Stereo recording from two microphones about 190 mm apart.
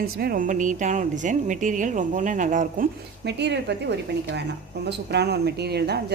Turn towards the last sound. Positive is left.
turn(degrees=-60)  # may be behind; listen again after turning